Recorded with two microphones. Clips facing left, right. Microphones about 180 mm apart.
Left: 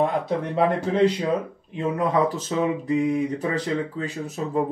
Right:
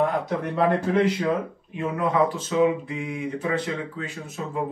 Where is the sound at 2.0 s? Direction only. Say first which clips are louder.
Even; 35° left (ahead or behind).